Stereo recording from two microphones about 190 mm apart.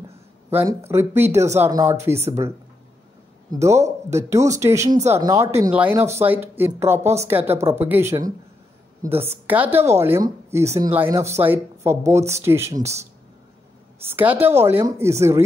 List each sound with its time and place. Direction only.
0.5 s speech: 10° right (ahead or behind)
1.2 s speech: 35° right (ahead or behind)
1.6 s speech: 15° right (ahead or behind)
3.5 s speech: 15° right (ahead or behind)
14.1 s speech: 10° right (ahead or behind)